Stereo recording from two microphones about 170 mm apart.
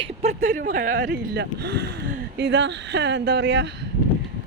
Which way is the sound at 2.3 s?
90° right.